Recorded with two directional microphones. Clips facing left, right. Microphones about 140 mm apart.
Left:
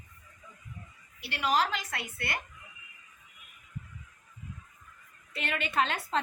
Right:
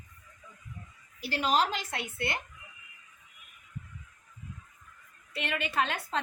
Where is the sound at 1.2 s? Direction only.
35° right (ahead or behind).